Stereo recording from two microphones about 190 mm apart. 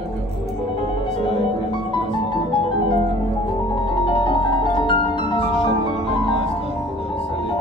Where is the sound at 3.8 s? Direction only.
25° left (ahead or behind).